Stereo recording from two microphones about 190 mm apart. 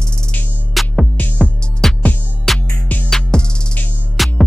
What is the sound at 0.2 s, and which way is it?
Music, 5° left (ahead or behind).